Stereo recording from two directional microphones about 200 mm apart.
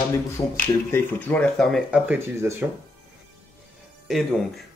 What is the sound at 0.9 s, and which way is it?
Speech, 10° left (ahead or behind).